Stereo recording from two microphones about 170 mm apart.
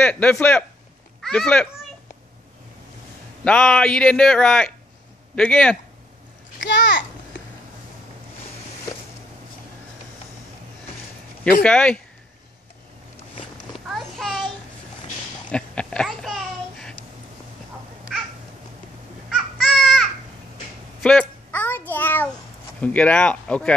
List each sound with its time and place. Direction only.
0.0 s a child's voice: 10° left (ahead or behind)
3.4 s speech: 5° left (ahead or behind)
6.6 s a child's voice: 90° left
11.6 s speech: 5° left (ahead or behind)
13.7 s a sound: centre (ahead or behind)
15.5 s a sound: 5° left (ahead or behind)
19.2 s baby cry: centre (ahead or behind)
21.0 s a sound: 5° left (ahead or behind)
22.8 s speech: 10° left (ahead or behind)